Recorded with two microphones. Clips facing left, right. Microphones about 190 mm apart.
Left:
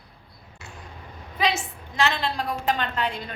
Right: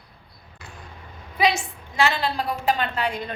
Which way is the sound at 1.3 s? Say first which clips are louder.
Right 3 dB; 10° right (ahead or behind).